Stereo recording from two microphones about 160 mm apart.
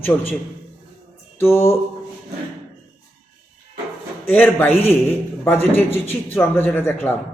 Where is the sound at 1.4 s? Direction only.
15° left (ahead or behind).